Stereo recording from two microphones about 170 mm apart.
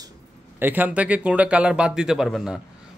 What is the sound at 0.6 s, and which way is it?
Speech, 10° right (ahead or behind).